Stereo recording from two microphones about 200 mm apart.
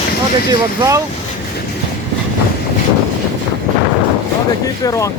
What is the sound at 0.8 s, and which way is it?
Speech, 15° right (ahead or behind).